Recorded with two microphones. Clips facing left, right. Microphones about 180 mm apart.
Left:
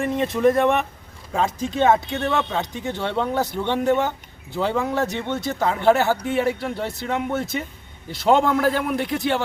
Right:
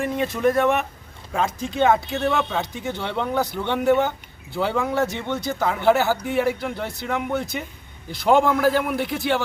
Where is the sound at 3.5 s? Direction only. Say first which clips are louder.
Left 1 dB; 20° left (ahead or behind).